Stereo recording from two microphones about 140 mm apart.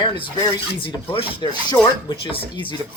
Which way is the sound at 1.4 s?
30° left (ahead or behind).